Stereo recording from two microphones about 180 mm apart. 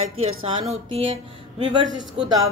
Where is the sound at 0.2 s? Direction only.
35° right (ahead or behind).